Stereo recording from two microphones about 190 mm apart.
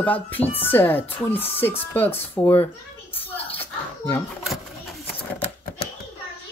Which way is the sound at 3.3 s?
30° left (ahead or behind).